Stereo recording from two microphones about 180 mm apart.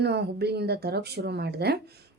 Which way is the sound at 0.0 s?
65° right (ahead or behind).